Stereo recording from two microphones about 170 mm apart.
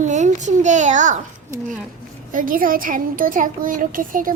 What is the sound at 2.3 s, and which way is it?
A child's voice, 55° right (ahead or behind).